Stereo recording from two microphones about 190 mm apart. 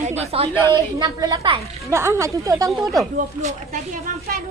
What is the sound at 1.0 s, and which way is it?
Speech, 20° right (ahead or behind).